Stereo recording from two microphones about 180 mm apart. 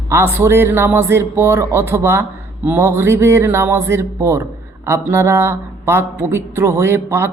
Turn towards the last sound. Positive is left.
turn(degrees=-15)  # may be behind; listen again after turning